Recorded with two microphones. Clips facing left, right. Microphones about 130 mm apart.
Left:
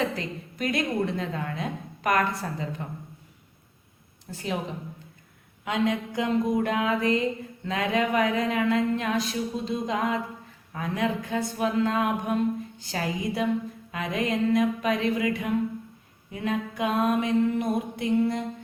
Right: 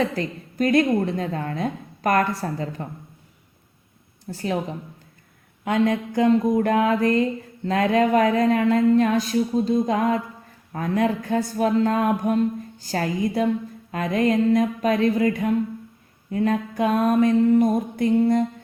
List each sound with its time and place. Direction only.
0.2 s a woman's voice: 45° right (ahead or behind)
4.3 s a woman's voice: 40° right (ahead or behind)
5.6 s a woman's voice: 45° right (ahead or behind)